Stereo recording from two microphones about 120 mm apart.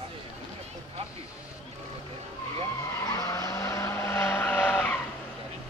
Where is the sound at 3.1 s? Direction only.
30° left (ahead or behind); by 5.0 s 15° left (ahead or behind).